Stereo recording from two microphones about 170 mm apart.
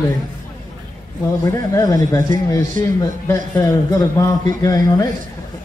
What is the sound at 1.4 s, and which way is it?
A man's voice, 20° left (ahead or behind).